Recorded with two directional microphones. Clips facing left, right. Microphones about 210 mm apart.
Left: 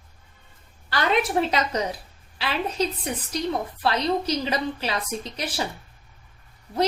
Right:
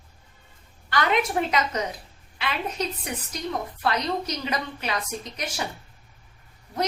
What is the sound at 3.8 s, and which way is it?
A woman's voice, 30° left (ahead or behind).